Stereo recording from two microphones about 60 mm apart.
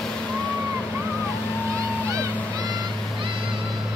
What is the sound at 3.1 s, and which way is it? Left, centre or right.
Vehicle, centre.